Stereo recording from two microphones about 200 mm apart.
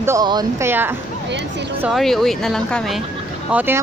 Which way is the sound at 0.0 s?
15° right (ahead or behind).